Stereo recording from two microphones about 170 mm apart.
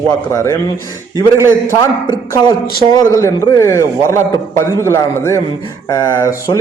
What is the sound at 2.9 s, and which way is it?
A man's voice, 15° left (ahead or behind).